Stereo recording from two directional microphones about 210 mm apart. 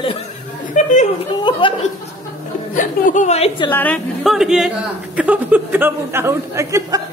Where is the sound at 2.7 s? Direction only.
40° left (ahead or behind).